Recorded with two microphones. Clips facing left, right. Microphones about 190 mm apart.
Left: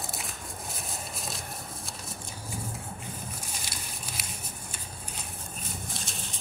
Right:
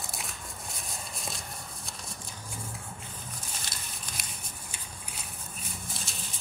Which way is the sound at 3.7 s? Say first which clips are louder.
Left 3 dB; 65° left (ahead or behind).